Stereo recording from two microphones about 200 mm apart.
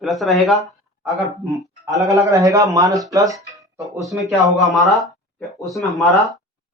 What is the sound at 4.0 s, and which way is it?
Speech, centre (ahead or behind).